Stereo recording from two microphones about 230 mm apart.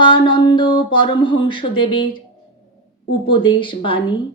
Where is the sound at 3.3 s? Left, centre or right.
Left.